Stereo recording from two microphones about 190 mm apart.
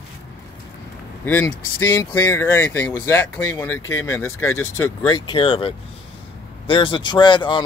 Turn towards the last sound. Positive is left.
turn(degrees=25)  # may be behind; listen again after turning